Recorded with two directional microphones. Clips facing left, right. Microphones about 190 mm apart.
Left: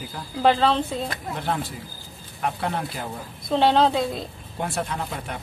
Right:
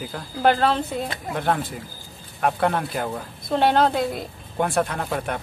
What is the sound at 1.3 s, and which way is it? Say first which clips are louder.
Speech: right 6 dB; 55° right (ahead or behind).